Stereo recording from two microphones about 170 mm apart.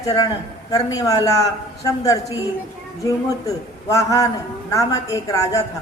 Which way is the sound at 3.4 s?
20° left (ahead or behind).